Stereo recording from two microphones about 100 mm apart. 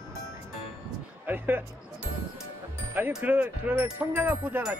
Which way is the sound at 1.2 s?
20° right (ahead or behind).